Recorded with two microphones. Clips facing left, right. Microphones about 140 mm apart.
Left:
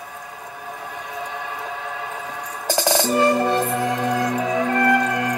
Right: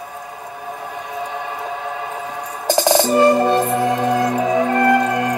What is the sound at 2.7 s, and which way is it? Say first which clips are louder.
Music: right 5 dB; 25° right (ahead or behind).